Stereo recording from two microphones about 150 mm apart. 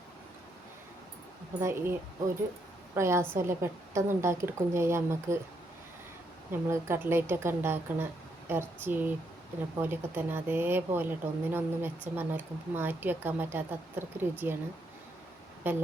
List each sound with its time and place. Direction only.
1.6 s a woman's voice: 15° right (ahead or behind)
6.5 s a woman's voice: 15° right (ahead or behind)
15.6 s a woman's voice: 10° right (ahead or behind)